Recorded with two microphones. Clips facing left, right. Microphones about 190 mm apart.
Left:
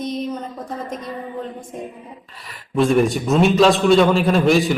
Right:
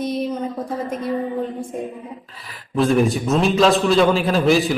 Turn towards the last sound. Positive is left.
turn(degrees=0)  # may be behind; listen again after turning